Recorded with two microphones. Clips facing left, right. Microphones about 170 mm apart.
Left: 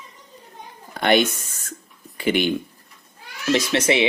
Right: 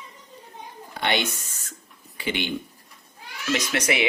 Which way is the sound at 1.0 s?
45° left (ahead or behind).